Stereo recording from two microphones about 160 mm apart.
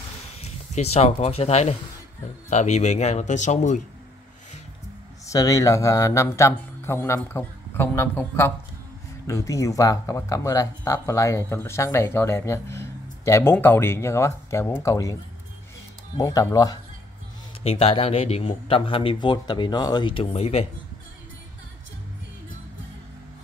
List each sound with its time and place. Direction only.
0.4 s speech: 40° left (ahead or behind)
5.2 s speech: 20° left (ahead or behind)
16.2 s speech: 20° left (ahead or behind)
17.6 s speech: 35° left (ahead or behind)